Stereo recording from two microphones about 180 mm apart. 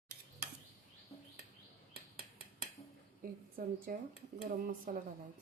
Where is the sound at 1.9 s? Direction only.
60° right (ahead or behind).